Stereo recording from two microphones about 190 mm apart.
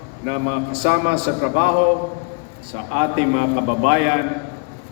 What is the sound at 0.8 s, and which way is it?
Speech, 65° right (ahead or behind).